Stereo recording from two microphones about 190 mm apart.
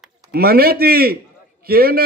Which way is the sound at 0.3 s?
55° right (ahead or behind).